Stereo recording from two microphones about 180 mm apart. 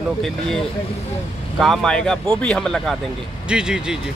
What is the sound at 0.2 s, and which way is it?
Speech, centre (ahead or behind).